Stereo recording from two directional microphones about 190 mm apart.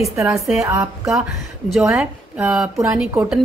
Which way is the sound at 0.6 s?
15° right (ahead or behind).